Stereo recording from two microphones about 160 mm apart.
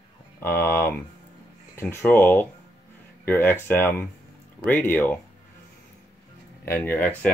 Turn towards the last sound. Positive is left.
turn(degrees=10)  # may be behind; listen again after turning